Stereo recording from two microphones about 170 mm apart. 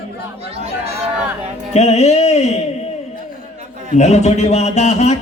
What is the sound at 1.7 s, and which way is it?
Music, 40° left (ahead or behind).